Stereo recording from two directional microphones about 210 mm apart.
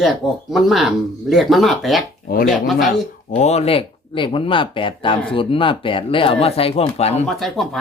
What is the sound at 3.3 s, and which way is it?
Speech, 30° left (ahead or behind).